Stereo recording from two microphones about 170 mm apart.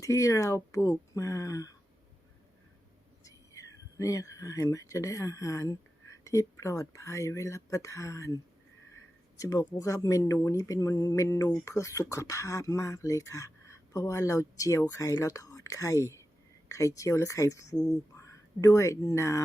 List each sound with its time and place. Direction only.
0.0 s speech: 20° left (ahead or behind)
3.2 s speech: 20° left (ahead or behind)
9.4 s speech: 20° left (ahead or behind)